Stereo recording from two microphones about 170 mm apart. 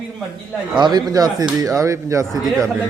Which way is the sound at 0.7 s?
25° right (ahead or behind).